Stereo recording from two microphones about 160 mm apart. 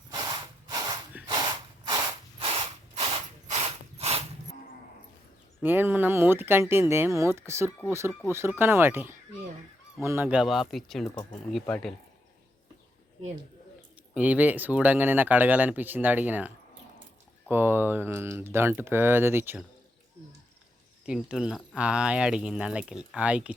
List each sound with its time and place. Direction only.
0.7 s snort: 25° right (ahead or behind)
1.3 s ratchet: 25° right (ahead or behind)
5.6 s speech: 10° right (ahead or behind); by 11.9 s 5° left (ahead or behind)
14.1 s speech: 10° right (ahead or behind)
17.5 s speech: 15° right (ahead or behind)
21.1 s speech: 5° right (ahead or behind)